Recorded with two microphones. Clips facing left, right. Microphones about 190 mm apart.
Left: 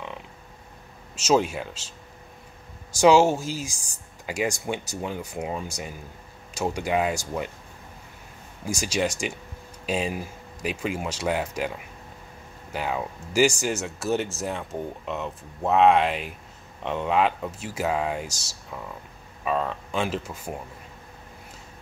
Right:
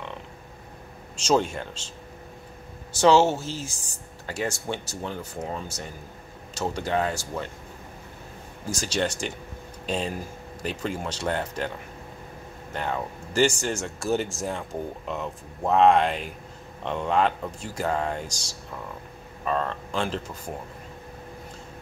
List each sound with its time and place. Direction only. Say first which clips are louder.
1.1 s speech: left 1 dB; 5° left (ahead or behind)
3.0 s speech: left 1 dB; 10° left (ahead or behind)
8.6 s speech: left 1 dB; 10° left (ahead or behind)
12.7 s speech: left 1 dB; 5° left (ahead or behind)